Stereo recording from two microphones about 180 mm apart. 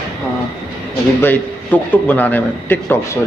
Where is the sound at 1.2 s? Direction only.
10° left (ahead or behind).